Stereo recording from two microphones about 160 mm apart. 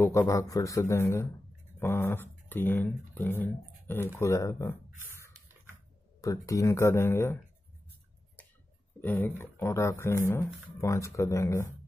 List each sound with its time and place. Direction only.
0.2 s a man's voice: 20° left (ahead or behind)
6.2 s a man's voice: 20° left (ahead or behind)
9.0 s speech: 10° left (ahead or behind)